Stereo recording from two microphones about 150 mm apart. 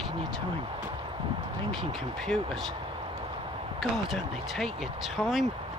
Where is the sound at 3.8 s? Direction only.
Centre (ahead or behind).